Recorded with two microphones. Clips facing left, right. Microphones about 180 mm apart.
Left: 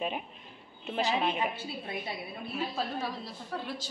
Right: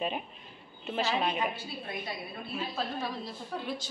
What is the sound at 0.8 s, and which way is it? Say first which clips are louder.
Speech: left 1 dB; 5° left (ahead or behind).